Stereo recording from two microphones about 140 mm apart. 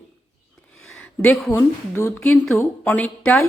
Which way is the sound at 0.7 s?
5° left (ahead or behind).